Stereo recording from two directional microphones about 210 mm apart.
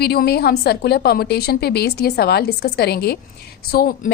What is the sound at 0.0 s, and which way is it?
A woman's voice, 50° left (ahead or behind).